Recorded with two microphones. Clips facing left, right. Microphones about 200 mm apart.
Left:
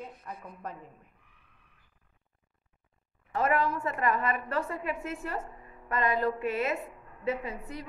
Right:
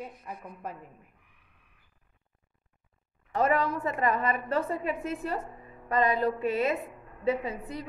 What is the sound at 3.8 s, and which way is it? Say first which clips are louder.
A woman's voice: right 2 dB; 35° right (ahead or behind).